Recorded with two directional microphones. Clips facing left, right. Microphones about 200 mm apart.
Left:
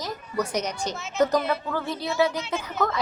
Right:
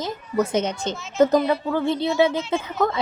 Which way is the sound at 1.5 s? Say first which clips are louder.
Right 6 dB; 25° right (ahead or behind).